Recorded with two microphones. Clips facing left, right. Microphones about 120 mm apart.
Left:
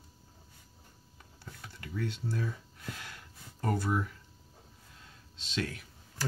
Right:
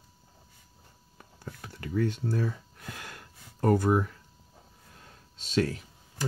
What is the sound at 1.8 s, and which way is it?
Speech, 50° right (ahead or behind).